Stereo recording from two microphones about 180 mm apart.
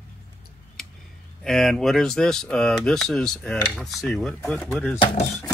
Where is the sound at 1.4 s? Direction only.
Centre (ahead or behind).